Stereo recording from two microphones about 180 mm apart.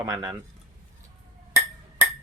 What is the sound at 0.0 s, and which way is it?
Speech, 20° right (ahead or behind).